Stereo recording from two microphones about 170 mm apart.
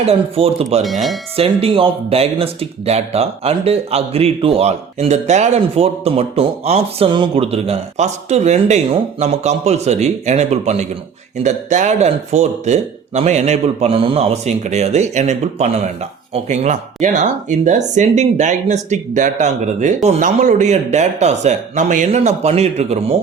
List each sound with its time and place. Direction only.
0.0 s speech: 35° right (ahead or behind)
0.8 s speech: centre (ahead or behind)
1.6 s speech: 35° right (ahead or behind)